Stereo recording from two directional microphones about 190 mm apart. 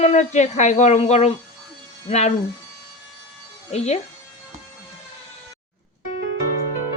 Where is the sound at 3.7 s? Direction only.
35° left (ahead or behind).